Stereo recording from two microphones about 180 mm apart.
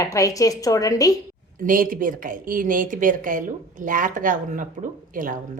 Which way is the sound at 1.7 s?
50° right (ahead or behind).